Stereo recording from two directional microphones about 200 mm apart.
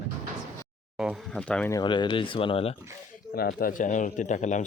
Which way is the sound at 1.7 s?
25° left (ahead or behind).